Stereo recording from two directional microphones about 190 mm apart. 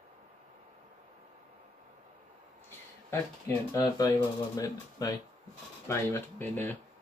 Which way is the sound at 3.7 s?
15° left (ahead or behind).